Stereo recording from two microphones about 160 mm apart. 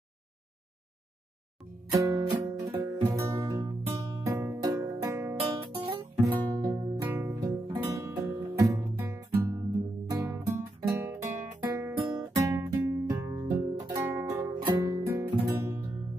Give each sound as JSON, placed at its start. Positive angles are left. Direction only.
{"t": 2.0, "sound": "music", "side_deg": -20}
{"t": 5.4, "sound": "music", "side_deg": -35}
{"t": 6.5, "sound": "music", "side_deg": -20}
{"t": 7.6, "sound": "music", "side_deg": -25}